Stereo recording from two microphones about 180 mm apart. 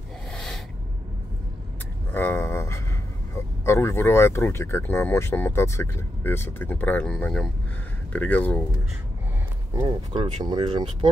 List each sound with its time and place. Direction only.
0.3 s snort: 5° left (ahead or behind)
2.1 s speech: 10° left (ahead or behind)
9.8 s speech: 25° right (ahead or behind)